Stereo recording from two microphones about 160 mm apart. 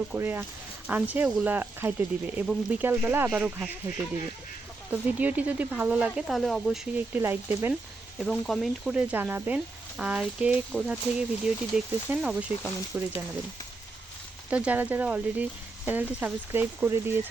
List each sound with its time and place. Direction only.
0.1 s speech: 15° right (ahead or behind)
4.9 s speech: 10° right (ahead or behind)
7.2 s speech: 15° right (ahead or behind)
8.2 s speech: centre (ahead or behind)
14.5 s speech: 10° right (ahead or behind)